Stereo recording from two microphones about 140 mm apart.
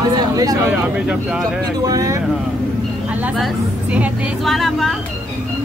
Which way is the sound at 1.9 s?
25° right (ahead or behind).